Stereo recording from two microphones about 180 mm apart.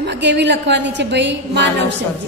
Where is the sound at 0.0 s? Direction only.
70° right (ahead or behind).